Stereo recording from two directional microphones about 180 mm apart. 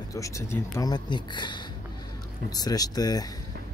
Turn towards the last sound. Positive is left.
turn(degrees=20)  # may be behind; listen again after turning